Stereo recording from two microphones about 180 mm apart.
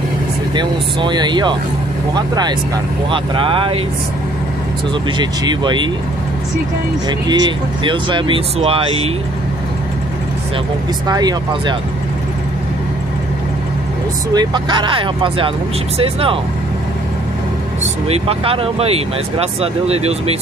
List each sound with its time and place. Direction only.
0.6 s speech: 25° right (ahead or behind)
5.2 s speech: 25° right (ahead or behind)
7.1 s speech: 25° right (ahead or behind)
11.1 s speech: 20° right (ahead or behind)
14.3 s speech: 25° right (ahead or behind)
18.0 s speech: 35° right (ahead or behind)